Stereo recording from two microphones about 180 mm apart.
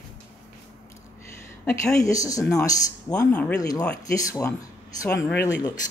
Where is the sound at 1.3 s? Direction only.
15° left (ahead or behind).